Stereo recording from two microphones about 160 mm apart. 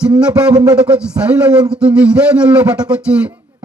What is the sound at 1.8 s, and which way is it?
Speech, 5° right (ahead or behind).